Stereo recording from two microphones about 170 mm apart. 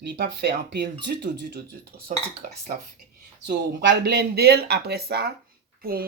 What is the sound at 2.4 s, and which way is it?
Speech, 55° right (ahead or behind).